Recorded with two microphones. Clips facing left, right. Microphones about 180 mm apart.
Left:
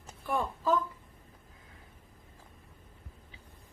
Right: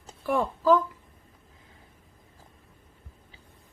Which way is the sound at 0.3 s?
90° right.